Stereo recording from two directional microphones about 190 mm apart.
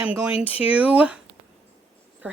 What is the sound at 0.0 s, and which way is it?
Speech, 10° right (ahead or behind).